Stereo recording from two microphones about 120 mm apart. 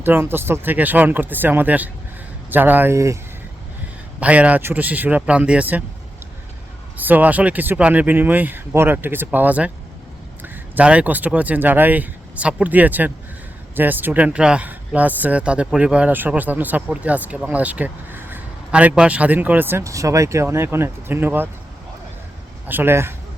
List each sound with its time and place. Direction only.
0.0 s speech: 15° right (ahead or behind)
4.2 s speech: 10° right (ahead or behind)
6.9 s speech: 15° right (ahead or behind)
22.6 s speech: 15° right (ahead or behind)